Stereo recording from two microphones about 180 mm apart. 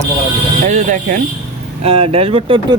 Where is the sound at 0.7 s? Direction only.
45° right (ahead or behind).